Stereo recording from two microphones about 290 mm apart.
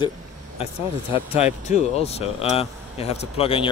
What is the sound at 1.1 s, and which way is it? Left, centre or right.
Speech, left.